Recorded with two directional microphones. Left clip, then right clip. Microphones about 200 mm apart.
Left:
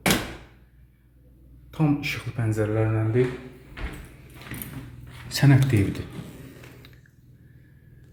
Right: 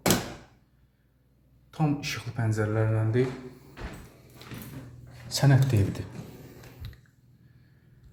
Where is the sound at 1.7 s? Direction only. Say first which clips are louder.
Left 4 dB; 15° left (ahead or behind).